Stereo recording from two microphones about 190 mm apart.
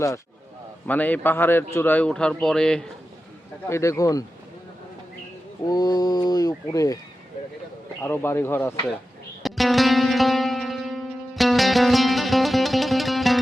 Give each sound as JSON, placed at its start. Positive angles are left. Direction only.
{"t": 0.9, "sound": "speech", "side_deg": 10}
{"t": 3.7, "sound": "speech", "side_deg": 15}
{"t": 5.6, "sound": "speech", "side_deg": 20}
{"t": 8.0, "sound": "speech", "side_deg": 10}
{"t": 9.4, "sound": "music", "side_deg": 0}